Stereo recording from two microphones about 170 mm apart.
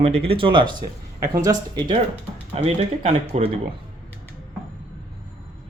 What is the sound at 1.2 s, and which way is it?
Speech, 20° right (ahead or behind).